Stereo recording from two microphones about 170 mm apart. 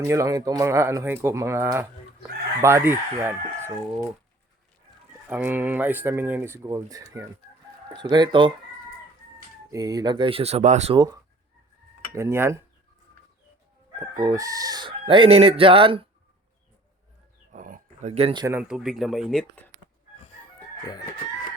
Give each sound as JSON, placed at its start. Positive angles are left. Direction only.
{"t": 0.0, "sound": "speech", "side_deg": -20}
{"t": 5.3, "sound": "speech", "side_deg": -10}
{"t": 9.6, "sound": "chicken", "side_deg": -20}
{"t": 10.9, "sound": "speech", "side_deg": -25}
{"t": 14.2, "sound": "chicken", "side_deg": -20}
{"t": 17.5, "sound": "a sound", "side_deg": -50}
{"t": 18.1, "sound": "chicken", "side_deg": -35}
{"t": 18.7, "sound": "speech", "side_deg": -5}